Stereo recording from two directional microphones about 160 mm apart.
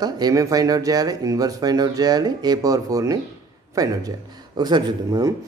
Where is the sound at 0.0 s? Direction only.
20° right (ahead or behind).